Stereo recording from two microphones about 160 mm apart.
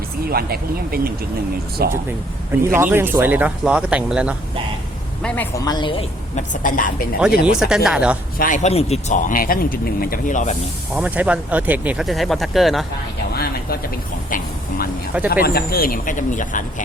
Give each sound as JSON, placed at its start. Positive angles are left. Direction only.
{"t": 0.3, "sound": "speech", "side_deg": -70}
{"t": 2.5, "sound": "speech", "side_deg": -15}
{"t": 5.2, "sound": "speech", "side_deg": 10}
{"t": 5.5, "sound": "a woman's voice", "side_deg": 25}
{"t": 6.3, "sound": "speech", "side_deg": 55}
{"t": 7.2, "sound": "speech", "side_deg": -5}
{"t": 8.4, "sound": "speech", "side_deg": 55}
{"t": 10.9, "sound": "speech", "side_deg": -10}
{"t": 13.3, "sound": "a sound", "side_deg": 75}
{"t": 14.3, "sound": "speech", "side_deg": 60}
{"t": 15.3, "sound": "speech", "side_deg": 75}